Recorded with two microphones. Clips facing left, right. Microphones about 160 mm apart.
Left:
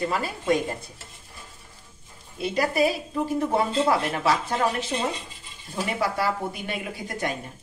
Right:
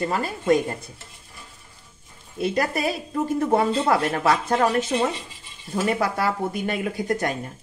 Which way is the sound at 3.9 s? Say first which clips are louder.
Right 2 dB; 50° right (ahead or behind).